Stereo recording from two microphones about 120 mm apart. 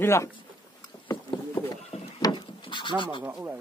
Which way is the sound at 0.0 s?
20° left (ahead or behind).